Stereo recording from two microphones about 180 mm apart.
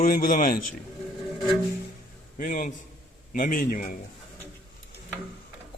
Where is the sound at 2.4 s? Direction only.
45° left (ahead or behind).